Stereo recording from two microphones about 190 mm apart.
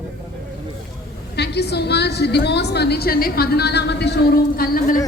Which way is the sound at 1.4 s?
60° left (ahead or behind).